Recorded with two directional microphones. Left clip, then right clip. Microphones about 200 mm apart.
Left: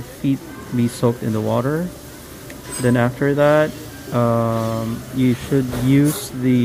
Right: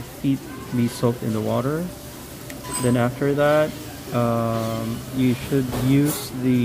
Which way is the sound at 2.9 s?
20° left (ahead or behind).